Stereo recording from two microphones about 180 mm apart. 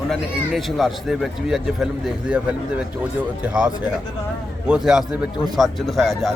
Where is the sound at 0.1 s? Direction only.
Centre (ahead or behind).